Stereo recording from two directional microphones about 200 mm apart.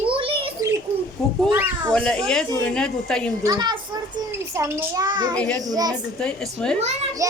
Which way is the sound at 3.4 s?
20° right (ahead or behind).